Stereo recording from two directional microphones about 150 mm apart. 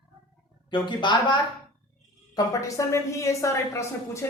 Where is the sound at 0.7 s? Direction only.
30° left (ahead or behind).